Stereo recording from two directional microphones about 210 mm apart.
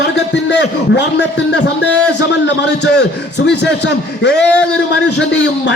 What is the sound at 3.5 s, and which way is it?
Speech, 55° left (ahead or behind).